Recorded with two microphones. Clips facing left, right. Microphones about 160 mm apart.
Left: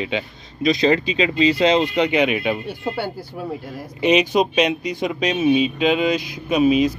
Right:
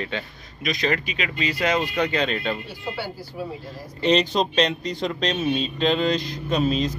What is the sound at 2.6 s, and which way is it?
Speech, 55° left (ahead or behind).